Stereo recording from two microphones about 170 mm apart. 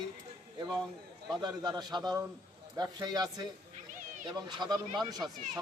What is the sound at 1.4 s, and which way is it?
Speech, 25° right (ahead or behind).